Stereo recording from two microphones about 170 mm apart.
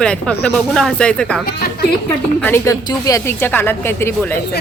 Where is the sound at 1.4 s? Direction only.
65° left (ahead or behind).